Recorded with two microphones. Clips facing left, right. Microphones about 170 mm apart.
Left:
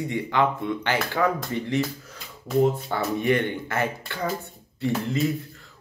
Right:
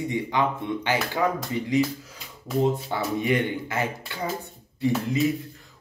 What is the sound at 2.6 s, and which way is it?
Speech, 15° right (ahead or behind).